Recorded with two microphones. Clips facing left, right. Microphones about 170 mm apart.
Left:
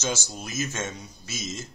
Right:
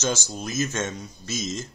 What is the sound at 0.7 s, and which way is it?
Speech, 10° left (ahead or behind).